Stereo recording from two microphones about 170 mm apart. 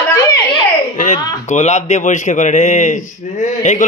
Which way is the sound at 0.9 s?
45° left (ahead or behind).